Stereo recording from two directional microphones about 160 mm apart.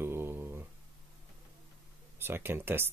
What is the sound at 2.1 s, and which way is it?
Speech, 15° right (ahead or behind).